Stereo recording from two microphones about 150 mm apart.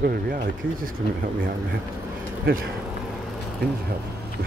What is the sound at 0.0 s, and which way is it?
Speech, 80° right.